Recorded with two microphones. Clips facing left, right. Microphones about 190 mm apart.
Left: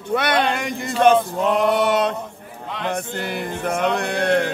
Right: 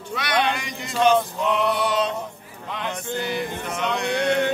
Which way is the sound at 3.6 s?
55° left (ahead or behind).